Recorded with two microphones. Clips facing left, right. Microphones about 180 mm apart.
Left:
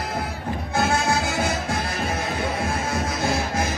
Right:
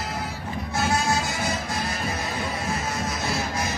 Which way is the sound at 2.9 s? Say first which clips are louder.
Left 4 dB; 55° left (ahead or behind).